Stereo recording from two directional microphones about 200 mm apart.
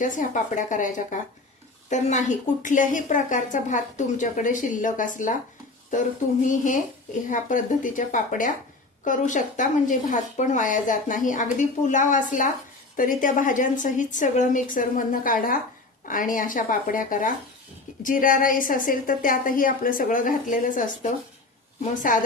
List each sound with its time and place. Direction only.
0.0 s speech: 40° left (ahead or behind)
7.3 s a woman's voice: 40° left (ahead or behind)
22.1 s a woman's voice: 40° left (ahead or behind)